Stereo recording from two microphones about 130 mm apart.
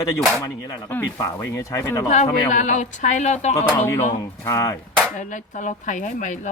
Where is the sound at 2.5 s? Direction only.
70° left (ahead or behind).